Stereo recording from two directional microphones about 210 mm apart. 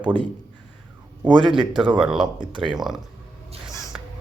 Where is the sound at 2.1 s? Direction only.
20° right (ahead or behind).